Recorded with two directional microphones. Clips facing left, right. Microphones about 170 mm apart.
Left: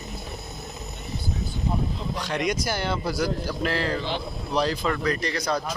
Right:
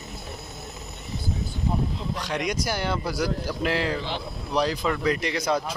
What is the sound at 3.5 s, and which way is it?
Speech, 15° right (ahead or behind).